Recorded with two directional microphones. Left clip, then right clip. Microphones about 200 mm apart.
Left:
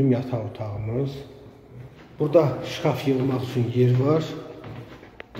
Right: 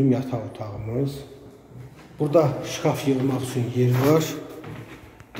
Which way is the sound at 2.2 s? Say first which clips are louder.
Even; 5° right (ahead or behind).